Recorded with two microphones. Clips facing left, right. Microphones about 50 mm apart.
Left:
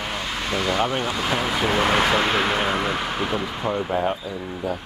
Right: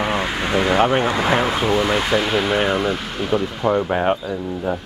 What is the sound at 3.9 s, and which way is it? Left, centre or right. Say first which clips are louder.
Speech: right 4 dB; right.